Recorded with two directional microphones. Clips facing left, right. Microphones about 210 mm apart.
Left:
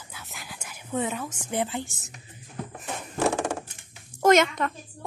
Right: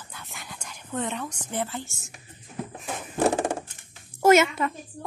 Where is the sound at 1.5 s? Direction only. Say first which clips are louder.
Left 3 dB; 15° left (ahead or behind).